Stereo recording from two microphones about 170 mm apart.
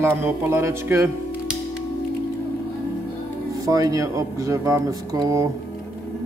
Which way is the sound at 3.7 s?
20° right (ahead or behind).